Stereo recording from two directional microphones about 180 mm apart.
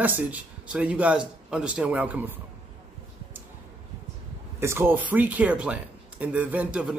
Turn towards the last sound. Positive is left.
turn(degrees=-5)  # may be behind; listen again after turning